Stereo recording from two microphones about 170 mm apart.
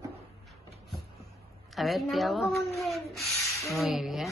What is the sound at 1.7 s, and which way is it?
Speech, centre (ahead or behind).